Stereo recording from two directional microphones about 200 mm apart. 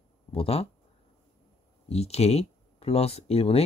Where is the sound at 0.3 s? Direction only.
30° left (ahead or behind).